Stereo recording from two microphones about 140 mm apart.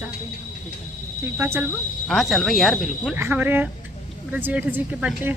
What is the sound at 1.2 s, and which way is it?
Speech, 15° right (ahead or behind).